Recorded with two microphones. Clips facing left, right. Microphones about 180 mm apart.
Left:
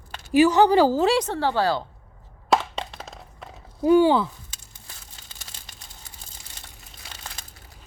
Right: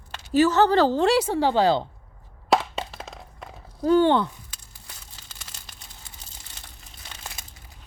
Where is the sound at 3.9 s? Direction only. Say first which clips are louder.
Left 2 dB; 10° left (ahead or behind).